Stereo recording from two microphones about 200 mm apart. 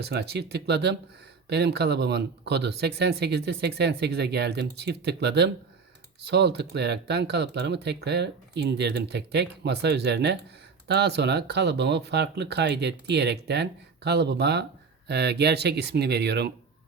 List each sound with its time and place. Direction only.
0.0 s speech: 55° right (ahead or behind)